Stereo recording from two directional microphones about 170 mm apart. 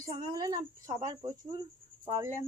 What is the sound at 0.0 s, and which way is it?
A child's voice, 25° right (ahead or behind).